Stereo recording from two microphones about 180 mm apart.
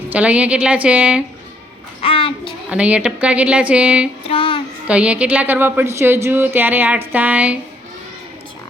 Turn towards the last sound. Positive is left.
turn(degrees=-10)  # may be behind; listen again after turning